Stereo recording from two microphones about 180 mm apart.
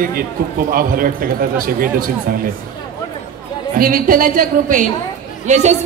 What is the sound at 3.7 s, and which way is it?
Speech, 50° right (ahead or behind).